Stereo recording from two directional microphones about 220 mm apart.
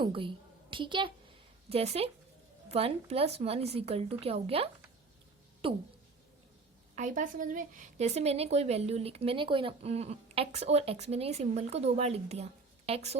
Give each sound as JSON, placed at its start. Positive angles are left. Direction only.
{"t": 0.0, "sound": "a woman's voice", "side_deg": -25}
{"t": 6.9, "sound": "speech", "side_deg": -35}